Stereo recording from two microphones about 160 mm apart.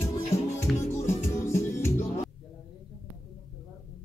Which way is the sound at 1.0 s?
15° left (ahead or behind).